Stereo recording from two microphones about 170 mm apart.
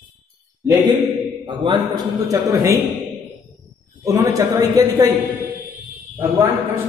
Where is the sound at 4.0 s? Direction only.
20° right (ahead or behind).